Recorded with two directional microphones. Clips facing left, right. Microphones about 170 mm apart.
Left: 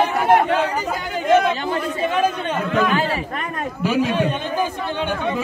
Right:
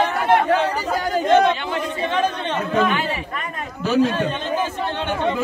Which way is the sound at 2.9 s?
40° left (ahead or behind).